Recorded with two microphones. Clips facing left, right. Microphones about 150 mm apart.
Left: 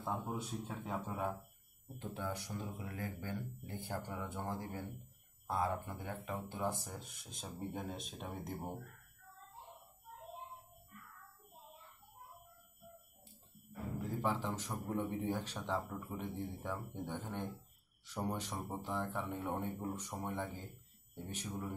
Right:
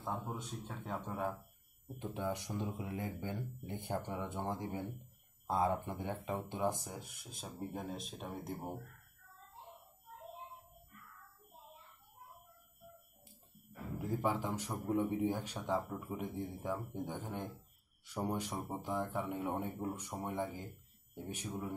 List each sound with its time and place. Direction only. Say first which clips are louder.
0.0 s speech: left 1 dB; 5° left (ahead or behind)
2.0 s speech: right 3 dB; 15° right (ahead or behind); by 8.5 s centre (ahead or behind)
14.0 s speech: right 2 dB; 10° right (ahead or behind)